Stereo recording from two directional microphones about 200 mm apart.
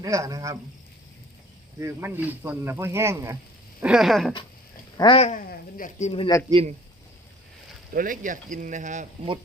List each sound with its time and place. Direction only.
0.0 s speech: 15° right (ahead or behind)
1.8 s speech: 10° right (ahead or behind)
4.9 s speech: 25° left (ahead or behind)
5.3 s speech: 45° left (ahead or behind); by 6.4 s 25° left (ahead or behind)
6.5 s a man's voice: 30° right (ahead or behind)
7.9 s speech: 40° right (ahead or behind)